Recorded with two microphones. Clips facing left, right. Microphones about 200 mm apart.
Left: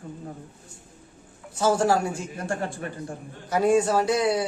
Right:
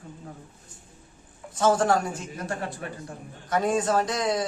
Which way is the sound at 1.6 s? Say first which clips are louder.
Even; 10° left (ahead or behind).